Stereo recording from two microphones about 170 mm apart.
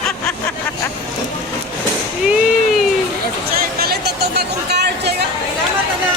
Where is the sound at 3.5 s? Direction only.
65° right (ahead or behind).